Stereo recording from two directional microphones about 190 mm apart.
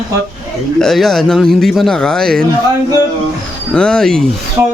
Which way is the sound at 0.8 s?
Centre (ahead or behind).